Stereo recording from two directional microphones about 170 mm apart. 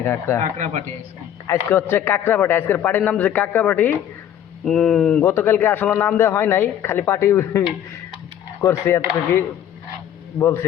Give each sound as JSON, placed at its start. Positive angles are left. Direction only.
{"t": 0.0, "sound": "a man's voice", "side_deg": 15}
{"t": 0.6, "sound": "speech", "side_deg": -40}
{"t": 1.5, "sound": "a man's voice", "side_deg": 15}
{"t": 5.2, "sound": "a man's voice", "side_deg": 15}
{"t": 8.6, "sound": "a man's voice", "side_deg": 15}